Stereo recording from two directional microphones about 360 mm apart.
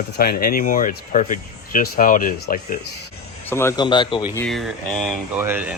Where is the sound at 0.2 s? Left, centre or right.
Left.